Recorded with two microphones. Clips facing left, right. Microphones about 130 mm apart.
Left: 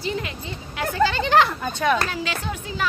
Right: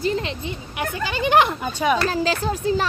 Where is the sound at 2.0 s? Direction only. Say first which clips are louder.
Right 6 dB; 35° right (ahead or behind).